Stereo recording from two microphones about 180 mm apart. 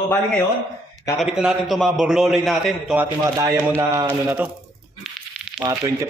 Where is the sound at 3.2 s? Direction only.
20° right (ahead or behind).